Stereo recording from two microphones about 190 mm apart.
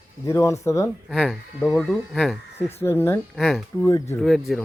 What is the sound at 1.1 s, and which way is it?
Speech, centre (ahead or behind).